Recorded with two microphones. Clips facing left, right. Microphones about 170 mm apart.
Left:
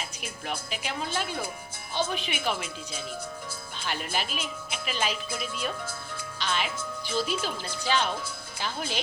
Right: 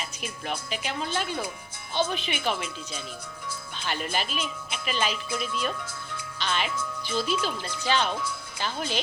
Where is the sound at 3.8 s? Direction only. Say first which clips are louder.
Right 2 dB; 5° left (ahead or behind).